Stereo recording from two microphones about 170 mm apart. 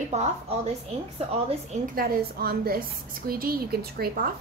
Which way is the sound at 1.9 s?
60° right (ahead or behind).